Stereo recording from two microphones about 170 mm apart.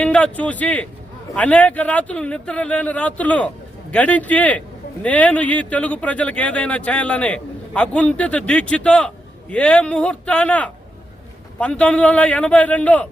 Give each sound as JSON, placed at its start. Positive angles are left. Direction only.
{"t": 0.0, "sound": "speech", "side_deg": 5}